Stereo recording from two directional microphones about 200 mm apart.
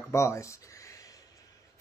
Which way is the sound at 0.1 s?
15° left (ahead or behind).